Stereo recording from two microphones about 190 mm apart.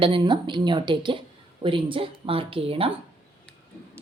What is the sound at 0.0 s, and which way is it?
Speech, 25° right (ahead or behind).